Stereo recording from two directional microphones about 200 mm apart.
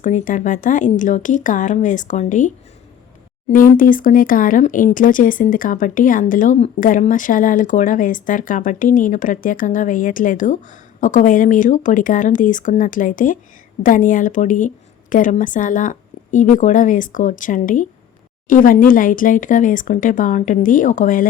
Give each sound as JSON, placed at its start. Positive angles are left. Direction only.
{"t": 0.0, "sound": "speech", "side_deg": 40}
{"t": 3.5, "sound": "speech", "side_deg": 45}